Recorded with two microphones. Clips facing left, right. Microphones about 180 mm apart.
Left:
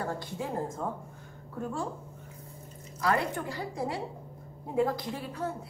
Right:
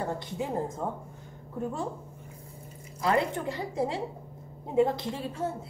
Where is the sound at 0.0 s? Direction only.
20° right (ahead or behind).